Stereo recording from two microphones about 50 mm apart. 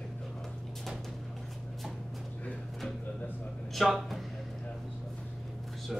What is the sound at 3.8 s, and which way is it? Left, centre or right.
Speech, centre.